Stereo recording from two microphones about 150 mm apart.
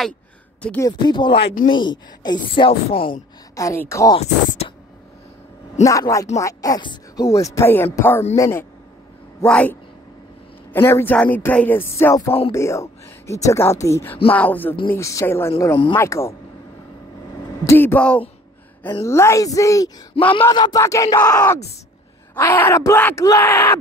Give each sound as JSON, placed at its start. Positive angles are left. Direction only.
{"t": 0.7, "sound": "speech", "side_deg": 25}
{"t": 1.4, "sound": "speech", "side_deg": 65}
{"t": 1.7, "sound": "speech", "side_deg": 30}
{"t": 3.5, "sound": "speech", "side_deg": 20}
{"t": 4.2, "sound": "speech", "side_deg": 45}
{"t": 5.9, "sound": "speech", "side_deg": 20}
{"t": 17.6, "sound": "speech", "side_deg": 15}